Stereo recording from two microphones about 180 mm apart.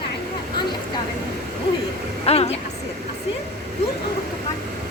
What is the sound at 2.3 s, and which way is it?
Speech, 35° left (ahead or behind).